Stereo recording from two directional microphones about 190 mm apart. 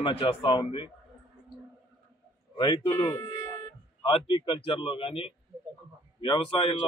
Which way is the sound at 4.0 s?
30° left (ahead or behind).